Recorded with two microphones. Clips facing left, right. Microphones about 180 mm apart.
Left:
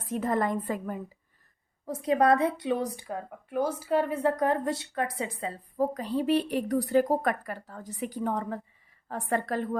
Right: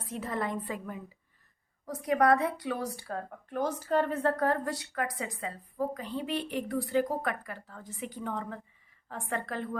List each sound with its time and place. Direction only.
0.0 s a woman's voice: 50° left (ahead or behind)
1.9 s a woman's voice: 25° left (ahead or behind)